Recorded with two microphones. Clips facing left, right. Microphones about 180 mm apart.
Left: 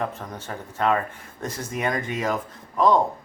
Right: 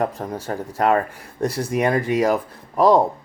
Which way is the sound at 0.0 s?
35° right (ahead or behind).